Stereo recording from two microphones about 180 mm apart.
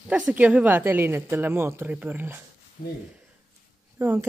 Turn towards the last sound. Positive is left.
turn(degrees=-10)  # may be behind; listen again after turning